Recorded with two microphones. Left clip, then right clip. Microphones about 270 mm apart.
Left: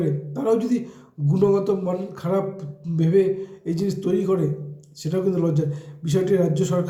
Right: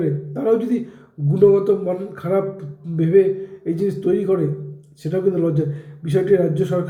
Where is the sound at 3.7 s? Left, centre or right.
Centre.